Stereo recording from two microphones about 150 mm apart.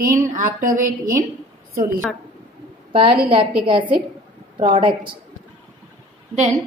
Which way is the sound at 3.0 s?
75° right (ahead or behind).